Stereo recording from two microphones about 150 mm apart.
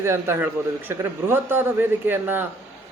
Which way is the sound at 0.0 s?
15° right (ahead or behind).